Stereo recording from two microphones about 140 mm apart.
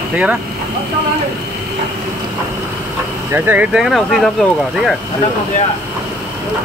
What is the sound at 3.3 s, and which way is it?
Speech, 10° right (ahead or behind).